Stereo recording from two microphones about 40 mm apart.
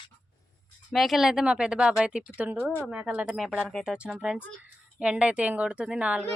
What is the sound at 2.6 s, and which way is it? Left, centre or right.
Speech, left.